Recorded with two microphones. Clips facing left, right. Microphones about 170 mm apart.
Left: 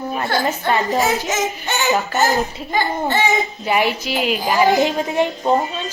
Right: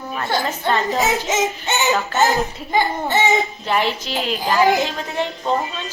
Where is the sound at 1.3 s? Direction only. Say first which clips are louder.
Right 1 dB; 20° right (ahead or behind).